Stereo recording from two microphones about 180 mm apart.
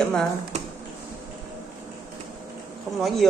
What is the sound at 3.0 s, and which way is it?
Speech, centre (ahead or behind).